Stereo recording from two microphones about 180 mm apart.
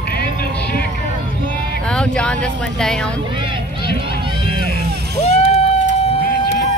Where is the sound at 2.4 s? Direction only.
5° left (ahead or behind).